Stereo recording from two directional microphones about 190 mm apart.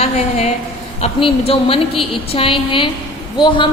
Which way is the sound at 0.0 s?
35° left (ahead or behind).